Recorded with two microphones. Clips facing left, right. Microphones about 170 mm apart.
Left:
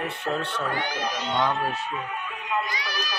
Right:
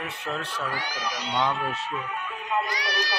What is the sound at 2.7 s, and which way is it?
Run, 75° right (ahead or behind).